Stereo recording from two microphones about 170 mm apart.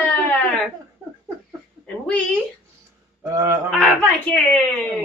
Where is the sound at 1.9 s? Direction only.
10° left (ahead or behind).